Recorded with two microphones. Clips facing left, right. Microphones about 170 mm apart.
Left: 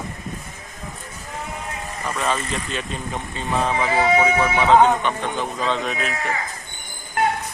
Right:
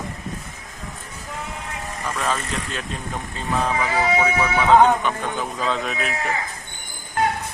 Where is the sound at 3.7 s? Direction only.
25° left (ahead or behind).